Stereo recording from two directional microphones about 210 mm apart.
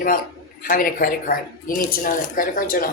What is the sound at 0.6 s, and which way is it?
Speech, 40° left (ahead or behind).